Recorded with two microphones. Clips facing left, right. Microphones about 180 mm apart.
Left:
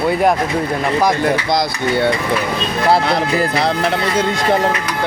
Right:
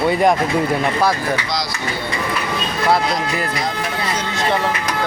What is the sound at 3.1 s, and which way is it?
Speech, 65° left (ahead or behind).